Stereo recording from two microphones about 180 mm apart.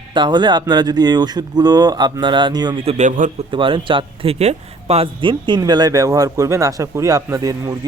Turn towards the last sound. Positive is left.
turn(degrees=-20)  # may be behind; listen again after turning